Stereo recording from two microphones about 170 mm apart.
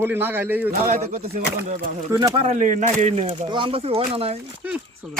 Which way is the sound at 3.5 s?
30° right (ahead or behind).